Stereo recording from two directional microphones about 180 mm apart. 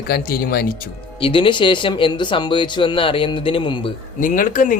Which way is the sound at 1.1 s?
30° left (ahead or behind).